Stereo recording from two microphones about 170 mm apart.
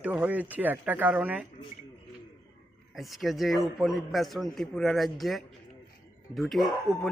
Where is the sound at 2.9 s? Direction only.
Centre (ahead or behind).